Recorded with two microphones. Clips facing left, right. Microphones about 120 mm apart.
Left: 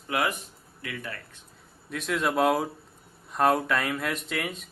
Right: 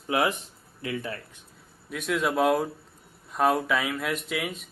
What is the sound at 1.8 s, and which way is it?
Speech, centre (ahead or behind).